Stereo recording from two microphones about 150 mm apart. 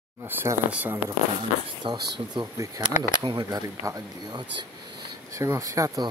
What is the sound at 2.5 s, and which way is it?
Speech, 20° right (ahead or behind).